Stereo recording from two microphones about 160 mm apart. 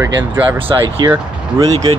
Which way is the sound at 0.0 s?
10° right (ahead or behind).